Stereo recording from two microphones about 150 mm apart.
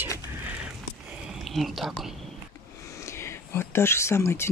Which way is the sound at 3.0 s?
20° left (ahead or behind).